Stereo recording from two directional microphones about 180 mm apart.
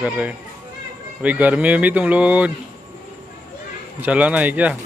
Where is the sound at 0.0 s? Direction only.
10° right (ahead or behind).